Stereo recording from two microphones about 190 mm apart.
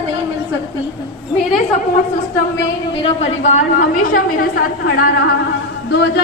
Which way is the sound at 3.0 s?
35° left (ahead or behind).